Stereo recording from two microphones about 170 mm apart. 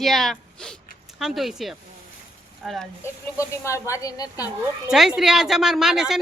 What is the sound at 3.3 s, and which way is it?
Speech, 20° left (ahead or behind).